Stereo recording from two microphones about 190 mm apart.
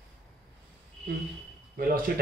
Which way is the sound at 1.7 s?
50° right (ahead or behind).